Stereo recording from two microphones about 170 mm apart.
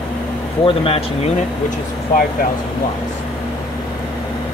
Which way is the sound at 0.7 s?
35° left (ahead or behind).